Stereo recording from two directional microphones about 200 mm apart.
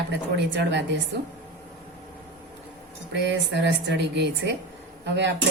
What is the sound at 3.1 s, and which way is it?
Speech, 60° right (ahead or behind).